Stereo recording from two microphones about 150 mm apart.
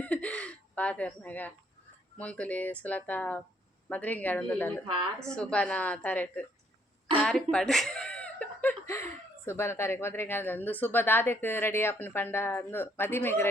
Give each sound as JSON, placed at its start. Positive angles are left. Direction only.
{"t": 0.0, "sound": "a sound", "side_deg": 10}
{"t": 2.1, "sound": "speech", "side_deg": 10}
{"t": 7.5, "sound": "chuckle", "side_deg": 5}
{"t": 9.5, "sound": "speech", "side_deg": 15}